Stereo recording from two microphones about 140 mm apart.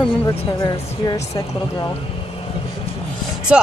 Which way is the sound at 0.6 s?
25° left (ahead or behind).